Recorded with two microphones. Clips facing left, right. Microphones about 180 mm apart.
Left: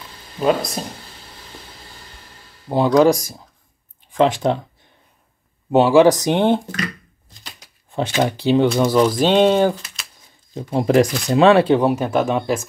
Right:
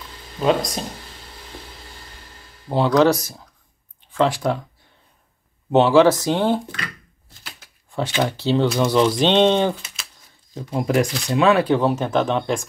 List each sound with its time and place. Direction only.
0.4 s speech: 5° left (ahead or behind)
2.7 s speech: 15° left (ahead or behind)
5.7 s speech: 10° left (ahead or behind)
7.2 s shuffling cards: 15° left (ahead or behind)
8.2 s speech: 15° left (ahead or behind)
8.6 s speech: centre (ahead or behind)
10.5 s speech: 25° left (ahead or behind); by 12.6 s 5° left (ahead or behind)